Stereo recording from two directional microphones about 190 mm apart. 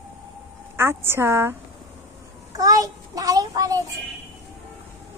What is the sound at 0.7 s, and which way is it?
Speech, 10° right (ahead or behind).